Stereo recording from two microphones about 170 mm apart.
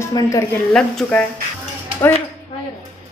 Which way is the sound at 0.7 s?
5° left (ahead or behind).